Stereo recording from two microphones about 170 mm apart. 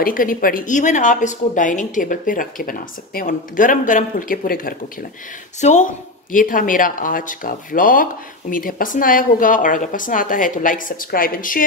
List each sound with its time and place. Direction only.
0.0 s speech: 55° left (ahead or behind)
5.6 s speech: 45° left (ahead or behind)